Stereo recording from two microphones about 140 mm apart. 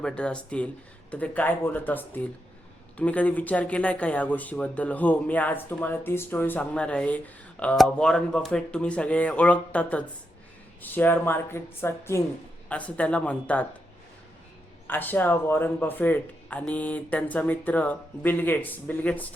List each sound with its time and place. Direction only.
0.0 s speech: 5° left (ahead or behind)
14.8 s speech: 15° left (ahead or behind)